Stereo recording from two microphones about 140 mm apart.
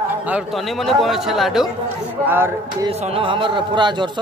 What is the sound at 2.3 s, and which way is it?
Speech, 15° right (ahead or behind).